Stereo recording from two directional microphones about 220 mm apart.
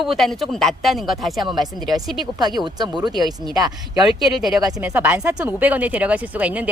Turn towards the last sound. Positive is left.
turn(degrees=-5)  # may be behind; listen again after turning